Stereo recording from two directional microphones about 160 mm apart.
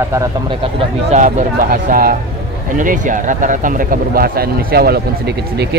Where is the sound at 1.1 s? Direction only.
50° right (ahead or behind); by 2.1 s 65° right (ahead or behind).